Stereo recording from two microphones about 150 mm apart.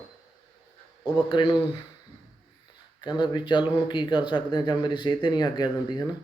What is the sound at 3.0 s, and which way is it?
Speech, 30° left (ahead or behind).